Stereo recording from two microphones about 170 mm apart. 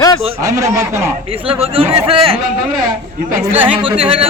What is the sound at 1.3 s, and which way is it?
A man's voice, 35° right (ahead or behind).